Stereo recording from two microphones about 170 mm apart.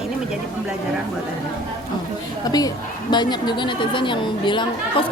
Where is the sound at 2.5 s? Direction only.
25° left (ahead or behind).